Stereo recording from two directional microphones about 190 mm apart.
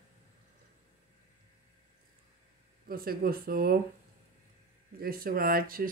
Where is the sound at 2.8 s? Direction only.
50° right (ahead or behind).